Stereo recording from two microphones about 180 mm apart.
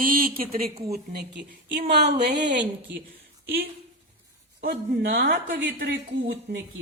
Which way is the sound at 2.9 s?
80° right.